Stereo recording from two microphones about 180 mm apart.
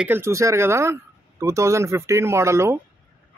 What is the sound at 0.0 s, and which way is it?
Speech, 15° right (ahead or behind).